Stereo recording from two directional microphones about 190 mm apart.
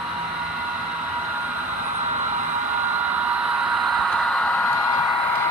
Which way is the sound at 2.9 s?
10° right (ahead or behind).